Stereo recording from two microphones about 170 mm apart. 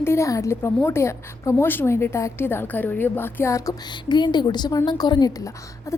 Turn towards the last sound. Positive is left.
turn(degrees=20)  # may be behind; listen again after turning